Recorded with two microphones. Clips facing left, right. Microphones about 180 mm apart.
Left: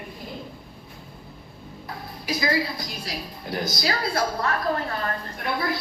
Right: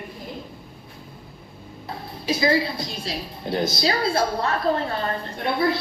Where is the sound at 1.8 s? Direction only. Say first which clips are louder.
Right 4 dB; 25° right (ahead or behind).